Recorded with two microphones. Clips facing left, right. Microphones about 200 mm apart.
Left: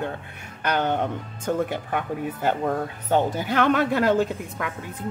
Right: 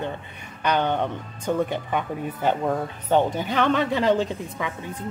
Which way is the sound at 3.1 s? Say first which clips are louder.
Right 1 dB; 10° left (ahead or behind).